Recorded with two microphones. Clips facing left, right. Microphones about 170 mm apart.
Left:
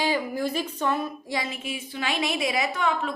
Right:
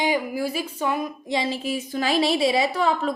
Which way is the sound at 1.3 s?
30° right (ahead or behind).